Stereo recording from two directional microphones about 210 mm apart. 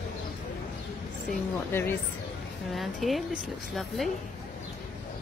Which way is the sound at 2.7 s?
Centre (ahead or behind).